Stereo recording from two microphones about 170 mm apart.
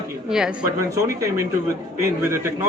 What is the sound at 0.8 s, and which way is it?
A man's voice, 20° right (ahead or behind).